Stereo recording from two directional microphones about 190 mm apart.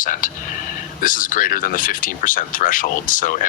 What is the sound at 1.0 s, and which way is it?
Speech, 45° left (ahead or behind).